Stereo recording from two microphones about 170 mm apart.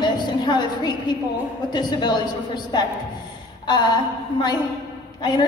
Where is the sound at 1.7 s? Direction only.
25° left (ahead or behind).